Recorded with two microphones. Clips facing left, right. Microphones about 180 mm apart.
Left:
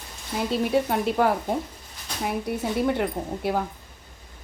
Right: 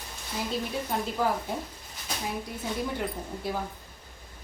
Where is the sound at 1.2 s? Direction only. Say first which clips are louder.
Left 4 dB; 70° left (ahead or behind).